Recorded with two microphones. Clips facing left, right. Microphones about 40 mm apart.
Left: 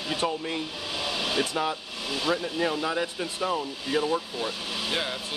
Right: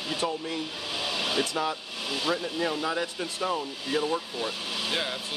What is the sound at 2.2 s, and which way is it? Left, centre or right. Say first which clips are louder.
Speech: left 2 dB; centre.